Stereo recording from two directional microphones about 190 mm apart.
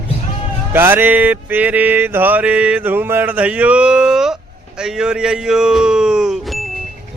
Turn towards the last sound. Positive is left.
turn(degrees=-5)  # may be behind; listen again after turning